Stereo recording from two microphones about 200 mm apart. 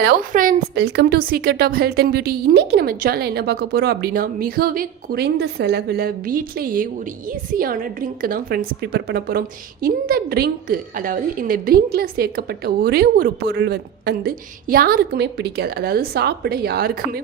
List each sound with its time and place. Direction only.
0.0 s a woman's voice: 50° right (ahead or behind)